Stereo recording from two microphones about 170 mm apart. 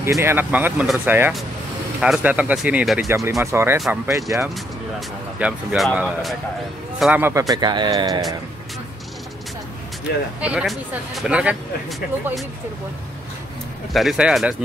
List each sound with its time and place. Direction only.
0.2 s speech: 15° right (ahead or behind)
3.1 s speech: 15° right (ahead or behind)
5.4 s a man's voice: 5° right (ahead or behind); by 8.2 s 25° right (ahead or behind)
10.4 s speech: 5° right (ahead or behind)
13.9 s speech: 5° right (ahead or behind)